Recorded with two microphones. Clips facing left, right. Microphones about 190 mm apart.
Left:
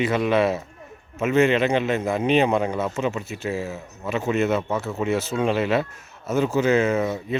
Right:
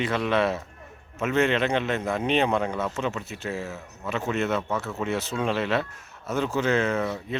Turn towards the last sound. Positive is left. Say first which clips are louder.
# left 4 dB
turn(degrees=10)  # may be behind; listen again after turning